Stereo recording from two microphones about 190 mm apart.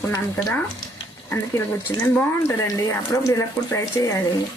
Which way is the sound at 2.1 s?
15° left (ahead or behind).